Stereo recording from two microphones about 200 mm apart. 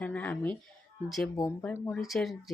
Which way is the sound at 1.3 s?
15° left (ahead or behind).